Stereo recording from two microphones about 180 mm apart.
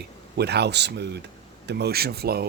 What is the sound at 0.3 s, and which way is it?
Speech, 65° right (ahead or behind).